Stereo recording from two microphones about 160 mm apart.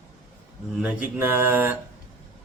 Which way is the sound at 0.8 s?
10° right (ahead or behind).